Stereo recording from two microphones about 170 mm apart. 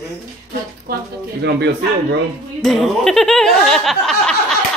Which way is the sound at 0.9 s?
60° right (ahead or behind).